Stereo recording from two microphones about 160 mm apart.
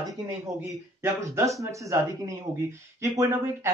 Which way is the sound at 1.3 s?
20° right (ahead or behind).